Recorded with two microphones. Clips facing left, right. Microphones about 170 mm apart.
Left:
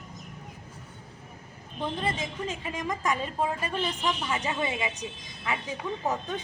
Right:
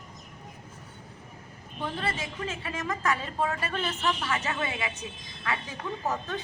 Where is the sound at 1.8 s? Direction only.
15° left (ahead or behind).